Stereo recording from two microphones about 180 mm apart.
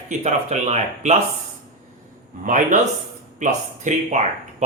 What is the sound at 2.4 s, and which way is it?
A man's voice, 45° right (ahead or behind).